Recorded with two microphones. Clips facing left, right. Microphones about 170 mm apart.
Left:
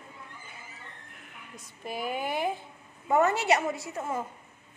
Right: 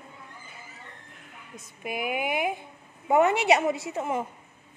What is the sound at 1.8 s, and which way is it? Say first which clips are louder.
A woman's voice: right 3 dB; 15° right (ahead or behind).